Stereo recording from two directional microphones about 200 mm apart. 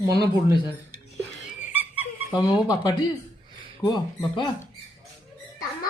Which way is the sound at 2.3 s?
20° left (ahead or behind).